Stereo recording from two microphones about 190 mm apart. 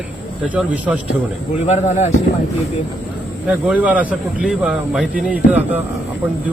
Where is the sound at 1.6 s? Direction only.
35° left (ahead or behind).